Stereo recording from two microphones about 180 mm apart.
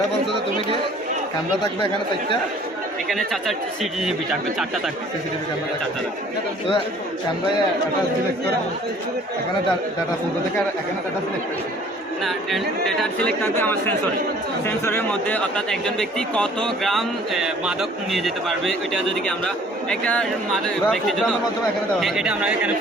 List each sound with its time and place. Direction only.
0.3 s speech: 25° right (ahead or behind)
3.1 s speech: centre (ahead or behind)
12.2 s speech: centre (ahead or behind)